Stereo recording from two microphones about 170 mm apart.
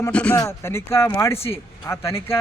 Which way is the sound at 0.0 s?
10° left (ahead or behind).